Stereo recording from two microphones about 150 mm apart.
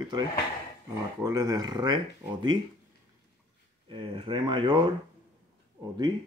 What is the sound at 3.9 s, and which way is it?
Speech, 35° right (ahead or behind).